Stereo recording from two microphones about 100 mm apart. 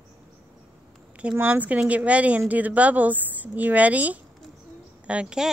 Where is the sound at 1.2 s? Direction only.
15° right (ahead or behind).